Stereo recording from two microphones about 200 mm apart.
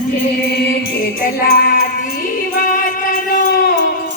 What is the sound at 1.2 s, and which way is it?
Music, 45° left (ahead or behind).